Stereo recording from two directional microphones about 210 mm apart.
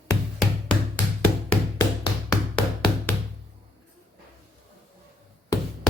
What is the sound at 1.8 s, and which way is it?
Music, 20° left (ahead or behind).